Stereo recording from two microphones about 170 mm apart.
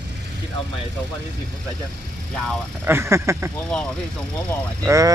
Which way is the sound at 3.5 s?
5° left (ahead or behind).